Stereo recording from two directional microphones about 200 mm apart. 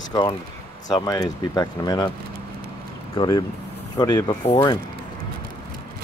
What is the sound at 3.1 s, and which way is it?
Speech, 20° left (ahead or behind).